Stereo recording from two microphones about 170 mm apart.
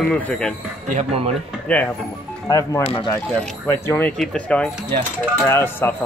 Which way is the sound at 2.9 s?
30° left (ahead or behind).